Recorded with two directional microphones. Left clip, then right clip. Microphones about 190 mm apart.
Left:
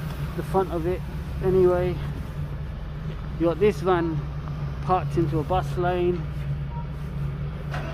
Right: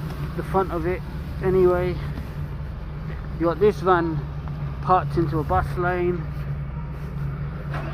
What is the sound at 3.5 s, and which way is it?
Speech, 10° left (ahead or behind).